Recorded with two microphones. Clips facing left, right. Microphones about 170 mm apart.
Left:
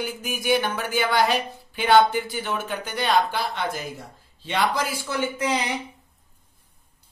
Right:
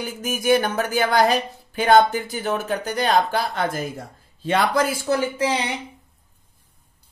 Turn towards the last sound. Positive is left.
turn(degrees=-30)  # may be behind; listen again after turning